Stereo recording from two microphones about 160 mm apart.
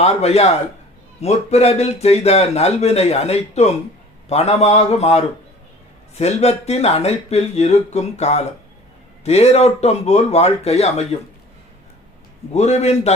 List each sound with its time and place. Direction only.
0.0 s speech: 40° left (ahead or behind)
12.5 s speech: 40° left (ahead or behind)